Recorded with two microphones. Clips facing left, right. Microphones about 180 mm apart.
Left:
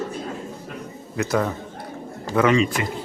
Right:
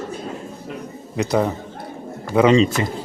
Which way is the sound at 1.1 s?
20° right (ahead or behind).